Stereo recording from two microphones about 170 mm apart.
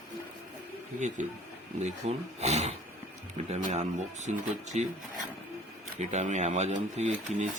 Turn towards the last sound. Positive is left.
turn(degrees=-45)  # may be behind; listen again after turning